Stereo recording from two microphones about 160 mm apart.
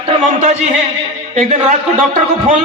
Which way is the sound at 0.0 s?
45° right (ahead or behind).